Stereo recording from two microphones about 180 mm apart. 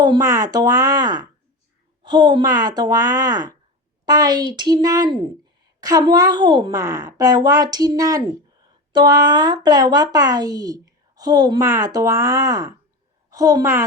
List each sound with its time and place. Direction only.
0.0 s speech: 20° right (ahead or behind)